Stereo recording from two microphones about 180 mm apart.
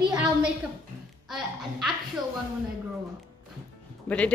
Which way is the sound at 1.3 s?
Centre (ahead or behind).